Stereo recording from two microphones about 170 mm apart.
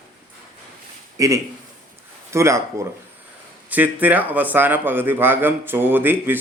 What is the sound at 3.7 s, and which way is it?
A man's voice, 10° right (ahead or behind).